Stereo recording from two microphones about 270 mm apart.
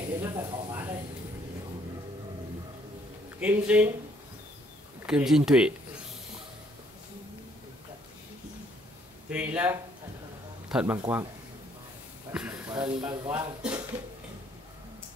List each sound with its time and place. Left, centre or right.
0.2 s a sound: centre
3.3 s speech: centre
5.0 s speech: centre
9.3 s a man's voice: centre
12.3 s a sound: centre
12.7 s speech: centre
13.3 s speech: centre